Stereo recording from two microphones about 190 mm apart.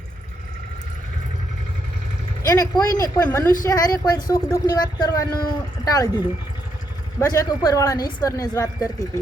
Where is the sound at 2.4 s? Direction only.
20° left (ahead or behind).